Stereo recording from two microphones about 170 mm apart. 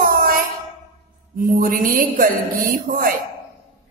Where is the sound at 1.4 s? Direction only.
55° right (ahead or behind).